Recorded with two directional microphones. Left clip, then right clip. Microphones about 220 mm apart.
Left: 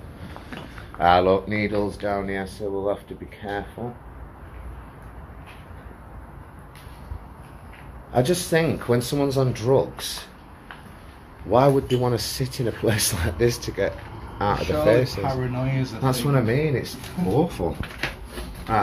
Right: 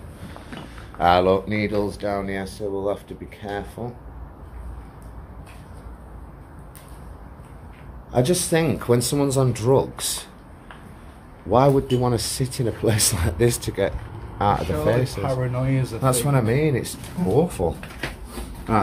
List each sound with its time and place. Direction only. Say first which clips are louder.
0.9 s speech: even; 20° right (ahead or behind)
8.1 s speech: even; 10° right (ahead or behind)
11.5 s speech: right 1 dB; 15° right (ahead or behind)
13.5 s speech: right 1 dB; 25° right (ahead or behind)
15.1 s speech: right 1 dB; 45° right (ahead or behind)
16.0 s speech: right 1 dB; 20° right (ahead or behind)